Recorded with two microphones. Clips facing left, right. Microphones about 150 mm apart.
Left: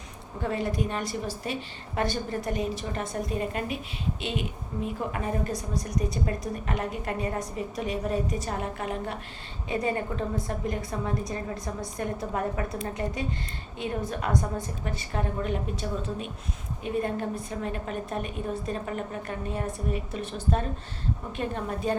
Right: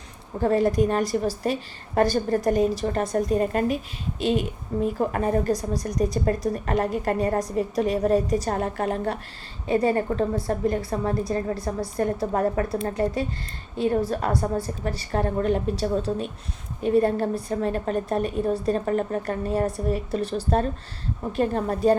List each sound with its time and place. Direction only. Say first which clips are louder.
0.4 s a woman's voice: right 9 dB; 40° right (ahead or behind)